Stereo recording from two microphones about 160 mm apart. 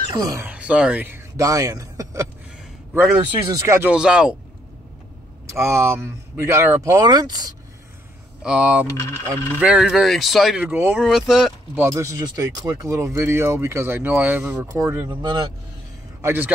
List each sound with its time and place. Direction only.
0.1 s speech: 25° right (ahead or behind)
0.5 s a man's voice: 5° right (ahead or behind)
3.9 s speech: 5° right (ahead or behind)
5.5 s speech: 15° right (ahead or behind)
8.4 s speech: 5° right (ahead or behind)
8.9 s a sound: 15° left (ahead or behind)
9.6 s speech: 5° right (ahead or behind)
11.8 s speech: 20° right (ahead or behind)
16.2 s speech: 15° right (ahead or behind)